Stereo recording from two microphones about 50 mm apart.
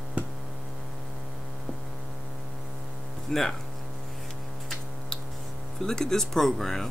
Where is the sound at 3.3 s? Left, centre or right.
Centre.